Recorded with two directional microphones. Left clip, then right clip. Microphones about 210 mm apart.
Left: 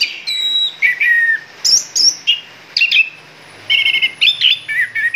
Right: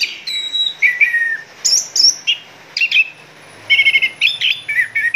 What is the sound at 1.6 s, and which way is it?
Chirp, 15° left (ahead or behind).